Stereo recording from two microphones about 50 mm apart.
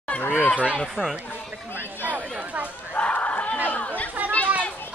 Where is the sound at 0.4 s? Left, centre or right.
Left.